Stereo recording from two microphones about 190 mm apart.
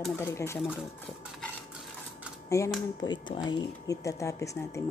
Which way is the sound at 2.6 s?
15° left (ahead or behind).